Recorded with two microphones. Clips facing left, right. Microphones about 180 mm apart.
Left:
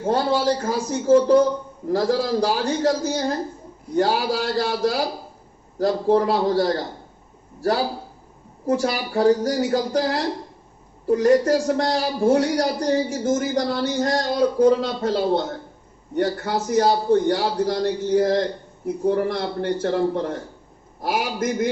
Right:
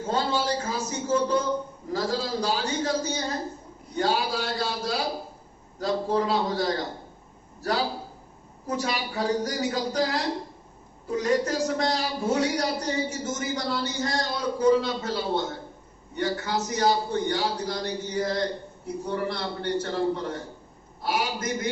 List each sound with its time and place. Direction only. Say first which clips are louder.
0.0 s a man's voice: left 6 dB; 55° left (ahead or behind)